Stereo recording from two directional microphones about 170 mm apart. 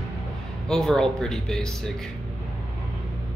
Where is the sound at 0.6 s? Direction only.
5° left (ahead or behind).